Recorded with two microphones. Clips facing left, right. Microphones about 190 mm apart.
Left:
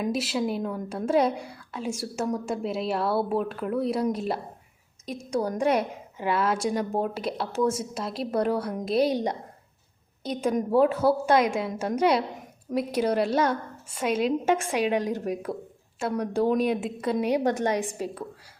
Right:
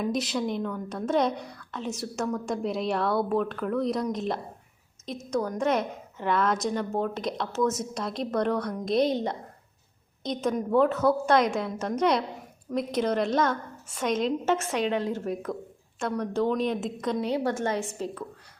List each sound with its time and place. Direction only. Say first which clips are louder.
0.0 s a woman's voice: left 1 dB; 5° left (ahead or behind)